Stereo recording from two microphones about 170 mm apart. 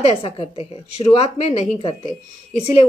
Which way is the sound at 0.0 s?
35° left (ahead or behind).